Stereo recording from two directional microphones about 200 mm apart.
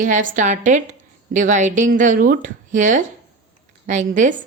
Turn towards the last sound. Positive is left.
turn(degrees=-40)  # may be behind; listen again after turning